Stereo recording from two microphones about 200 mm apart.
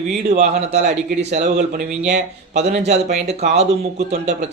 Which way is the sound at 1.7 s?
50° right (ahead or behind).